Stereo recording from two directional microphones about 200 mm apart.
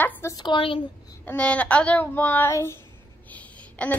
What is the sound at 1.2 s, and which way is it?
A woman's voice, 5° left (ahead or behind).